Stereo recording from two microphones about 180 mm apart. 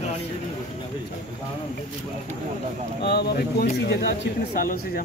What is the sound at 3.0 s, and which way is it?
Speech, 65° left (ahead or behind).